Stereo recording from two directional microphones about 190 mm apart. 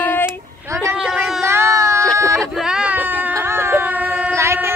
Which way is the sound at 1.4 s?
15° right (ahead or behind).